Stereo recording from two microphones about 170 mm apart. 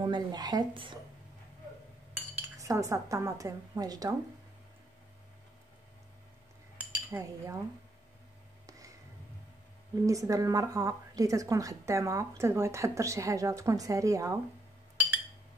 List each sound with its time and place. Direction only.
0.0 s a woman's voice: 25° right (ahead or behind)
2.1 s cutlery: 15° right (ahead or behind)
7.1 s speech: 15° right (ahead or behind)
8.6 s a sound: 20° right (ahead or behind)
10.0 s a woman's voice: 20° right (ahead or behind)